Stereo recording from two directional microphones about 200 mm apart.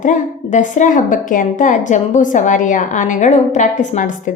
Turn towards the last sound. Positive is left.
turn(degrees=40)  # may be behind; listen again after turning